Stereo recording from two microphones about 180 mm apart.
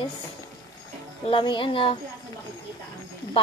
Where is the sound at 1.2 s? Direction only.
30° left (ahead or behind).